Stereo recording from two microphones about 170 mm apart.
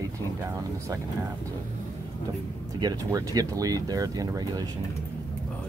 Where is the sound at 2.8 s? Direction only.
20° right (ahead or behind).